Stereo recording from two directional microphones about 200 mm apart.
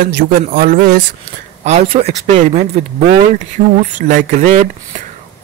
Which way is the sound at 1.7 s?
30° right (ahead or behind).